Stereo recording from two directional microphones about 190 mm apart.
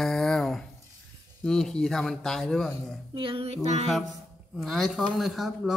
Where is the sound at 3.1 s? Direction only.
30° right (ahead or behind).